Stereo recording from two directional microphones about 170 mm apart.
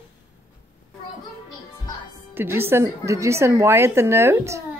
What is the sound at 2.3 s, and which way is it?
A woman's voice, 15° right (ahead or behind).